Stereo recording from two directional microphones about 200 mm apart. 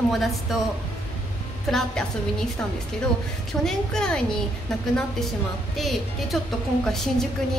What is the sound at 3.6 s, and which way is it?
Speech, 5° left (ahead or behind).